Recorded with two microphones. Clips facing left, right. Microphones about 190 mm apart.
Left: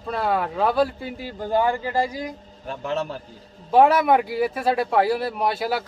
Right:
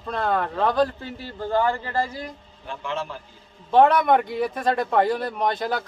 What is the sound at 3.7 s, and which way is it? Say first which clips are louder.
Speech: left 1 dB; 10° left (ahead or behind).